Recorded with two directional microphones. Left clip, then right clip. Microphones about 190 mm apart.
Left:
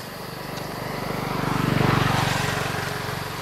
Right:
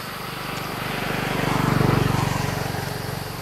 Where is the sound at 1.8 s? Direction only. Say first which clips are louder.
Left 1 dB; 25° left (ahead or behind).